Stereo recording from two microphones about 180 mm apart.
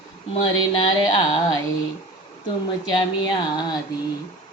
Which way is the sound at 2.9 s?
25° left (ahead or behind).